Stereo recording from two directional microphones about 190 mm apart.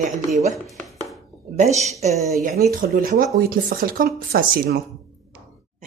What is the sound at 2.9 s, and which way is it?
Speech, 50° right (ahead or behind).